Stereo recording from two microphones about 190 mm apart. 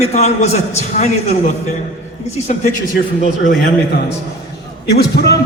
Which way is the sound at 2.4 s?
40° left (ahead or behind).